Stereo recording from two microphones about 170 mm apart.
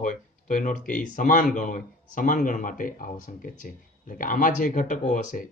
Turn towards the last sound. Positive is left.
turn(degrees=50)  # may be behind; listen again after turning